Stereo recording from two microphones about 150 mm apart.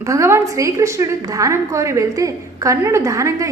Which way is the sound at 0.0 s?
20° right (ahead or behind).